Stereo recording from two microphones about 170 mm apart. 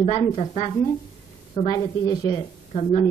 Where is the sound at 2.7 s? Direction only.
40° left (ahead or behind).